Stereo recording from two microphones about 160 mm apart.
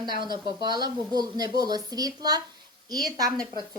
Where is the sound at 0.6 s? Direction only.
25° right (ahead or behind).